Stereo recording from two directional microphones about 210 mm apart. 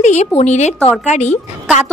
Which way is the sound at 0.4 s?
35° left (ahead or behind).